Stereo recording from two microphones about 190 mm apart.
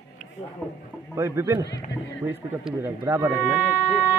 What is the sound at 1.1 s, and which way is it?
Speech, 15° right (ahead or behind).